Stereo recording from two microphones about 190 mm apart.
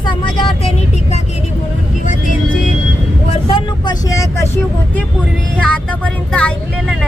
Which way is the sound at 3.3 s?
30° left (ahead or behind).